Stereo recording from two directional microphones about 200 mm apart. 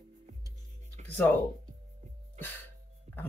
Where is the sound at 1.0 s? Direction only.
35° right (ahead or behind).